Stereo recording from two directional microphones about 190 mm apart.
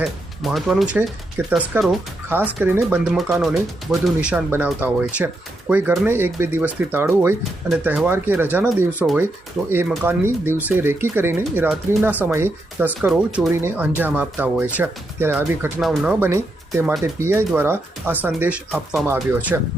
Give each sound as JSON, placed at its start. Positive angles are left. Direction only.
{"t": 0.0, "sound": "speech", "side_deg": 0}
{"t": 4.0, "sound": "speech", "side_deg": -5}
{"t": 15.8, "sound": "speech", "side_deg": 0}
{"t": 16.2, "sound": "speech", "side_deg": -10}